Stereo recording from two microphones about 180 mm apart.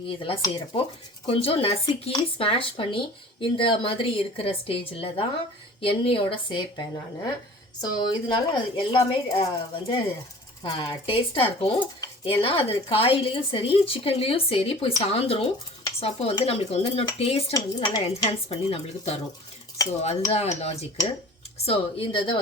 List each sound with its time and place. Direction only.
0.1 s speech: 30° left (ahead or behind)